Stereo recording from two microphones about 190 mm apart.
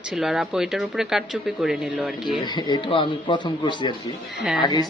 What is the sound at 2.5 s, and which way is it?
Speech, 25° left (ahead or behind).